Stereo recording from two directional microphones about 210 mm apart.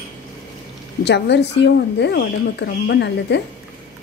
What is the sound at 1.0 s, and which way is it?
A woman's voice, 55° left (ahead or behind).